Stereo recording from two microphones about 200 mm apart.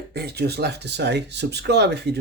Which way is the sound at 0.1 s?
55° right (ahead or behind).